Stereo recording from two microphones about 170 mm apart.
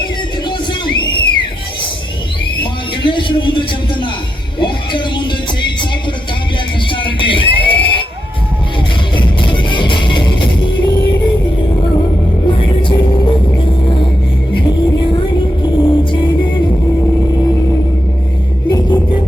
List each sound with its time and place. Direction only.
0.0 s music: 25° left (ahead or behind)
3.0 s speech: 30° left (ahead or behind)
4.6 s music: 30° left (ahead or behind)
6.9 s fire alarm: 30° left (ahead or behind)
9.1 s music: 30° left (ahead or behind)
12.5 s music: 30° left (ahead or behind)